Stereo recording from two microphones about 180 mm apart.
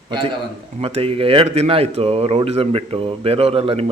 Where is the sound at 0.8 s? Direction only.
30° right (ahead or behind).